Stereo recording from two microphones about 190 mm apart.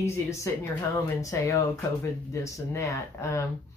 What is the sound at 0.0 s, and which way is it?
Speech, 15° left (ahead or behind).